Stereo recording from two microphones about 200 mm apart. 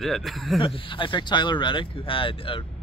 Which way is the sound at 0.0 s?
Centre (ahead or behind).